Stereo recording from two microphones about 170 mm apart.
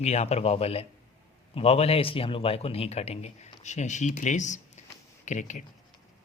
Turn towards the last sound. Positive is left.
turn(degrees=45)  # may be behind; listen again after turning